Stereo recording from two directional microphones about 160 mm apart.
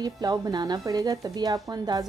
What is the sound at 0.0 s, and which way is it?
A woman's voice, 25° right (ahead or behind).